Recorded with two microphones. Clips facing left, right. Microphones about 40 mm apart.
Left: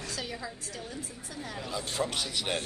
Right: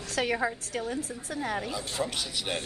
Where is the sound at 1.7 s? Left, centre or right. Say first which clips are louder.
Even; centre.